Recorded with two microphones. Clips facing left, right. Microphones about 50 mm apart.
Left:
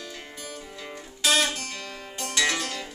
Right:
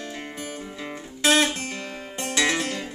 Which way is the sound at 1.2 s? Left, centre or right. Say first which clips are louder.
Right 4 dB; right.